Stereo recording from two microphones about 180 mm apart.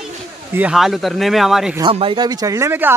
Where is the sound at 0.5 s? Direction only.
5° right (ahead or behind).